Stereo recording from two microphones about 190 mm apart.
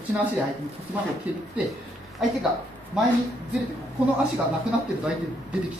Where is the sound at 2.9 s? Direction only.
5° right (ahead or behind).